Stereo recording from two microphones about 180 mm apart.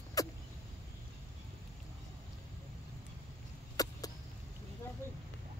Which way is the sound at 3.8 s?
20° left (ahead or behind).